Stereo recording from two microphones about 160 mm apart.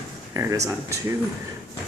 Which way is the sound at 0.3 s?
20° right (ahead or behind).